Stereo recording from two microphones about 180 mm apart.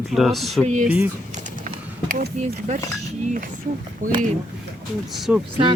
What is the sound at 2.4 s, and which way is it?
Speech, 40° right (ahead or behind).